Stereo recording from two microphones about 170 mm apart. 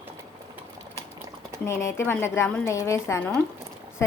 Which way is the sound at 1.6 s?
15° left (ahead or behind).